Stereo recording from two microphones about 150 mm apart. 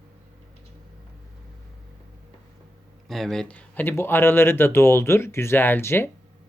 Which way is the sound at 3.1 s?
Centre (ahead or behind).